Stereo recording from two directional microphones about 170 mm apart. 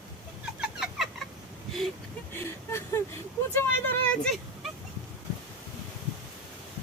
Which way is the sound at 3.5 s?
10° left (ahead or behind).